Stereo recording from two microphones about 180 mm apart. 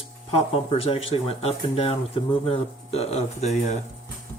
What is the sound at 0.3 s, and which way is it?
Speech, 30° left (ahead or behind).